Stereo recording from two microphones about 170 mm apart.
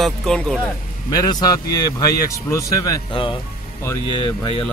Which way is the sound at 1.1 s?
20° left (ahead or behind).